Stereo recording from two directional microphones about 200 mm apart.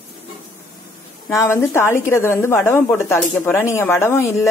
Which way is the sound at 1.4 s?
15° left (ahead or behind).